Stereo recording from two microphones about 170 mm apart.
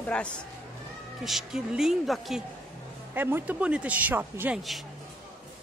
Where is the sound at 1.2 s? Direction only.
Centre (ahead or behind).